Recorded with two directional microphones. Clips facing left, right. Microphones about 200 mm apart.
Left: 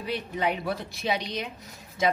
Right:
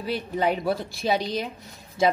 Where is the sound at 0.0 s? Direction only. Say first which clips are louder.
Right 3 dB; 35° right (ahead or behind).